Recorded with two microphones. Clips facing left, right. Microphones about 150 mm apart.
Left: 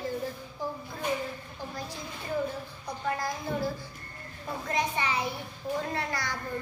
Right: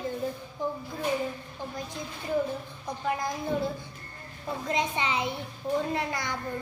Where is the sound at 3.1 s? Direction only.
20° right (ahead or behind).